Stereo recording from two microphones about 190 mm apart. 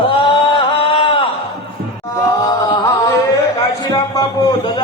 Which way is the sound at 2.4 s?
20° left (ahead or behind).